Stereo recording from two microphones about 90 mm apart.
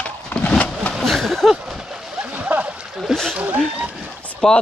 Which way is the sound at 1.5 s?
5° right (ahead or behind).